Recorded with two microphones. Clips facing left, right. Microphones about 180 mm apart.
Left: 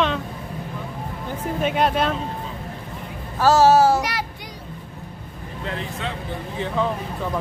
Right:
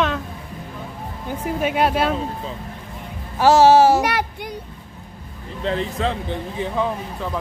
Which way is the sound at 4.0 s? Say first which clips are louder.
Right 5 dB; 55° right (ahead or behind).